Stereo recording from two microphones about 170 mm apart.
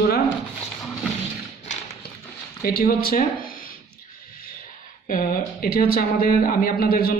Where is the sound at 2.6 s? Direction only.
60° left (ahead or behind).